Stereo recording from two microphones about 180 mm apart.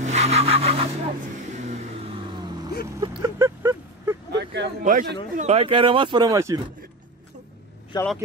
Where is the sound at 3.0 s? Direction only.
20° right (ahead or behind).